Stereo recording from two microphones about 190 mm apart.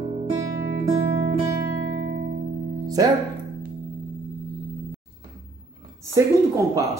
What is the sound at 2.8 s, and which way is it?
Music, 20° right (ahead or behind).